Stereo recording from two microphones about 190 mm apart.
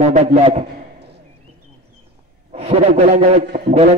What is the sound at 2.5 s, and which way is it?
A man's voice, 30° right (ahead or behind).